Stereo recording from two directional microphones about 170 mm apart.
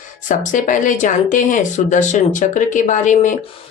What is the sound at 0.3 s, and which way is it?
Speech, 50° left (ahead or behind).